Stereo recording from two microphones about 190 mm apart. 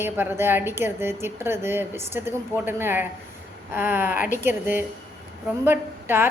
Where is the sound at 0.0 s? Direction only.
10° right (ahead or behind).